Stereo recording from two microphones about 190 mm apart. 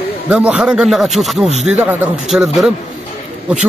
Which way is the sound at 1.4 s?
35° right (ahead or behind).